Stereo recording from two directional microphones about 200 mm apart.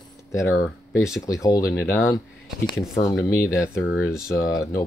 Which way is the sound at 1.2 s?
15° left (ahead or behind).